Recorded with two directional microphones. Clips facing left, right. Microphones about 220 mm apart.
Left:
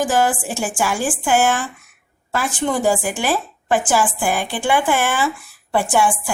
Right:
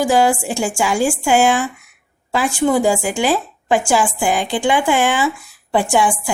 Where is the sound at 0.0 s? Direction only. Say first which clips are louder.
Right 3 dB; 10° right (ahead or behind).